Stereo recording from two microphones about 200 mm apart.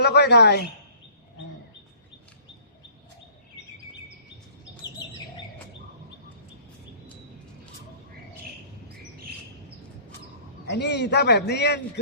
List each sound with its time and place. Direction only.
0.0 s speech: 55° left (ahead or behind)
10.7 s a man's voice: 60° left (ahead or behind)